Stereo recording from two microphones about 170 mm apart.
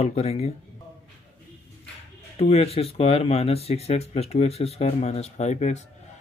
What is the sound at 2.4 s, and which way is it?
Speech, 35° left (ahead or behind).